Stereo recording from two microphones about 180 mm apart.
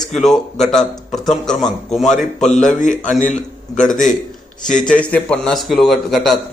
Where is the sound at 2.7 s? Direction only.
45° left (ahead or behind).